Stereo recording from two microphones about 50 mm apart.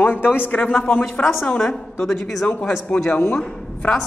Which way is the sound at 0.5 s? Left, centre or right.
Left.